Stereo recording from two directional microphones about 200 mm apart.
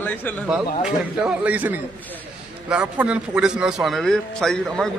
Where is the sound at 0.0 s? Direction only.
10° left (ahead or behind).